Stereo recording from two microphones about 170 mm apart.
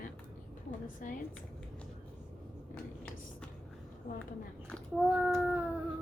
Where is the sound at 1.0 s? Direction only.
50° left (ahead or behind).